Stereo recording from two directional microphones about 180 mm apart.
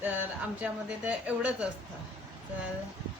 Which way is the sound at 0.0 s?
10° right (ahead or behind).